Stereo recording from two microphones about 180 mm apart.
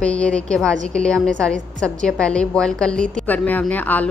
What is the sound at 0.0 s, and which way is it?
A woman's voice, 5° left (ahead or behind).